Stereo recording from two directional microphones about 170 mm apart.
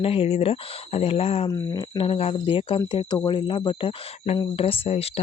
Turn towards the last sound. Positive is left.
turn(degrees=35)  # may be behind; listen again after turning